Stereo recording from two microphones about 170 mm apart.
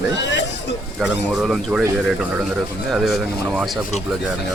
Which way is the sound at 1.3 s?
Centre (ahead or behind).